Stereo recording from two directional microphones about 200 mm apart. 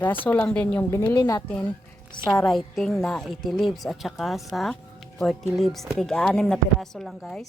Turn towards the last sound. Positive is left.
turn(degrees=0)  # may be behind; listen again after turning